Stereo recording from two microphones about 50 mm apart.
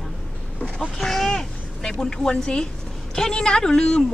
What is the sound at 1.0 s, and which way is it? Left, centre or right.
A woman's voice, centre.